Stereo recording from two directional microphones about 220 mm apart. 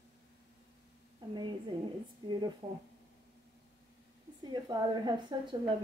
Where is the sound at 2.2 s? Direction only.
20° right (ahead or behind).